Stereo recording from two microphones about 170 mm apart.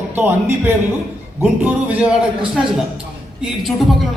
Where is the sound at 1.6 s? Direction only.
10° right (ahead or behind).